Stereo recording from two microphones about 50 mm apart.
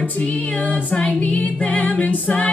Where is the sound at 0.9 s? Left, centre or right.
Left.